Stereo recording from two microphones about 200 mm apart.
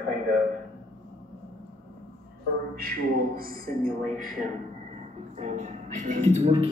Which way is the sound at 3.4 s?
45° right (ahead or behind).